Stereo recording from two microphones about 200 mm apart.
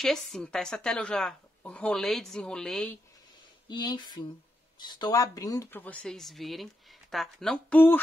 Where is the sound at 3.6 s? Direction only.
20° left (ahead or behind).